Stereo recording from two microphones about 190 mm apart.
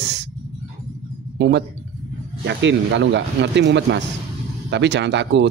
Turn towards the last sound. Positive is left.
turn(degrees=-70)  # may be behind; listen again after turning